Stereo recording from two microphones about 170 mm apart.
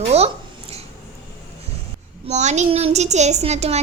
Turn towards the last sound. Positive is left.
turn(degrees=-40)  # may be behind; listen again after turning